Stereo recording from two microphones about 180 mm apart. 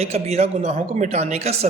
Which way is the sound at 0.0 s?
35° right (ahead or behind).